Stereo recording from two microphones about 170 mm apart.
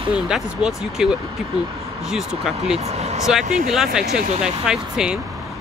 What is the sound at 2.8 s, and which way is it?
Speech, 40° right (ahead or behind).